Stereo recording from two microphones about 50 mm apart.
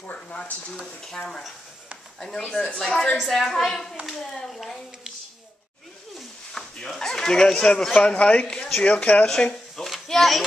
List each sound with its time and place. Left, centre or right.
0.0 s speech: left
1.0 s a woman's voice: centre
6.8 s speech: centre
8.5 s speech: centre
8.8 s speech: left
9.2 s speech: centre
9.8 s a sound: centre